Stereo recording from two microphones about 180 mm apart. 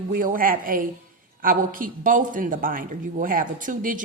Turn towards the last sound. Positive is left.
turn(degrees=-50)  # may be behind; listen again after turning